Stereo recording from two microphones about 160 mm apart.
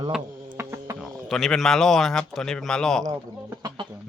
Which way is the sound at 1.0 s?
Centre (ahead or behind).